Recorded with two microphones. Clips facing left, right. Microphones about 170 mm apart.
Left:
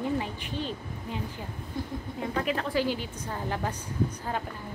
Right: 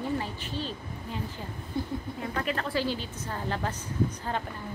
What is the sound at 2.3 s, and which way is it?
A woman's voice, 5° left (ahead or behind).